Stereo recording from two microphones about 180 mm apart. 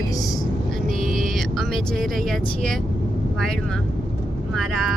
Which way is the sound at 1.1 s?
50° right (ahead or behind).